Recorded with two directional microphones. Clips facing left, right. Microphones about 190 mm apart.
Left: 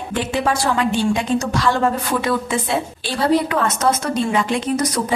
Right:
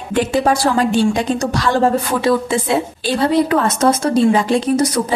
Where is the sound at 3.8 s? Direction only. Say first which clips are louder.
Right 6 dB; 30° right (ahead or behind).